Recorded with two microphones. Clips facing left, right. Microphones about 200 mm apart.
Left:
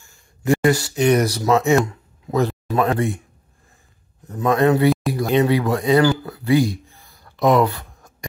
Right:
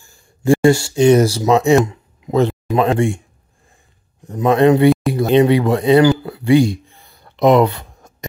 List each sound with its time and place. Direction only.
0.0 s speech: 30° right (ahead or behind)
4.3 s speech: 25° right (ahead or behind)
6.3 s a sound: 25° right (ahead or behind)